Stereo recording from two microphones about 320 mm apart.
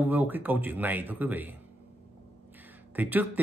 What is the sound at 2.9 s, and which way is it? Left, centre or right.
Speech, centre.